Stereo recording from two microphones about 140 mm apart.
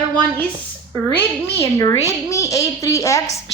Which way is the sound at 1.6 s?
25° left (ahead or behind).